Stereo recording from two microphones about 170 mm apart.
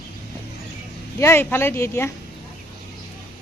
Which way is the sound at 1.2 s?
15° left (ahead or behind).